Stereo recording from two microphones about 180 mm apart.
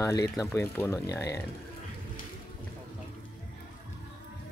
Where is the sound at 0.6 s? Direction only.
15° left (ahead or behind).